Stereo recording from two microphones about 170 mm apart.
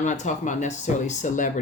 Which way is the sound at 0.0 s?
45° left (ahead or behind).